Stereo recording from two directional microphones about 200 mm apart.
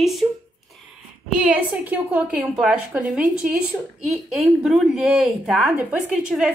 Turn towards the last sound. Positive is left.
turn(degrees=-5)  # may be behind; listen again after turning